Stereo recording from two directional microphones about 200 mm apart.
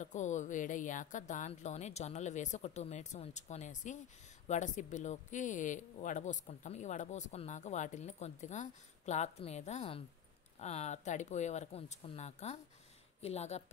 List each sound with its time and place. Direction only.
0.0 s speech: 35° left (ahead or behind)